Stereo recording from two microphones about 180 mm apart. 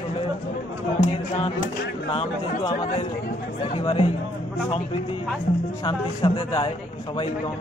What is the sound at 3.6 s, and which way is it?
Music, 35° left (ahead or behind).